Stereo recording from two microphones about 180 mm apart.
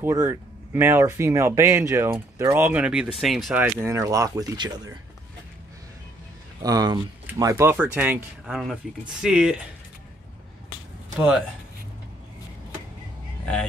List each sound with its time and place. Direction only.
0.0 s speech: 15° right (ahead or behind); by 3.6 s centre (ahead or behind)
3.6 s speech: 15° right (ahead or behind)
6.6 s speech: 20° right (ahead or behind); by 9.6 s 5° right (ahead or behind)